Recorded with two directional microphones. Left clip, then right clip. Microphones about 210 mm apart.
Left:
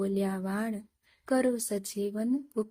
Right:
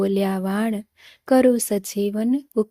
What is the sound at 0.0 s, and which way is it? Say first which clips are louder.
Speech: right 10 dB; 40° right (ahead or behind).